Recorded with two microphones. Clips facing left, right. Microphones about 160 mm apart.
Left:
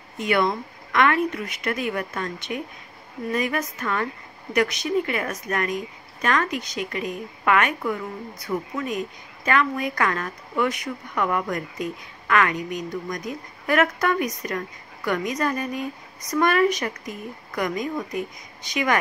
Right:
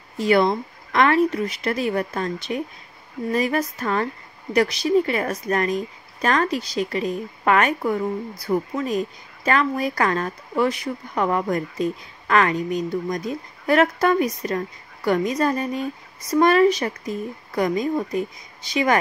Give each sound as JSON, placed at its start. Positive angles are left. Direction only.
{"t": 0.2, "sound": "a woman's voice", "side_deg": -35}